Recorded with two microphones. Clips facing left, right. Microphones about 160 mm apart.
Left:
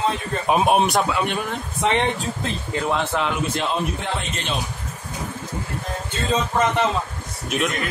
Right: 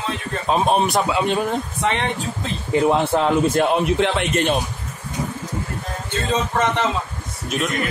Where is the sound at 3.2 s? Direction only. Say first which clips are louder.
Right 7 dB; 50° right (ahead or behind).